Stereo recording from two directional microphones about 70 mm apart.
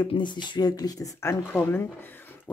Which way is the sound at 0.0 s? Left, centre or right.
Left.